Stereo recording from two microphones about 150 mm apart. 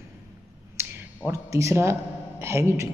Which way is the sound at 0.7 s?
15° right (ahead or behind).